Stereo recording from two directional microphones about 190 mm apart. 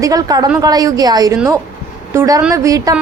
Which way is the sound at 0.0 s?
20° right (ahead or behind).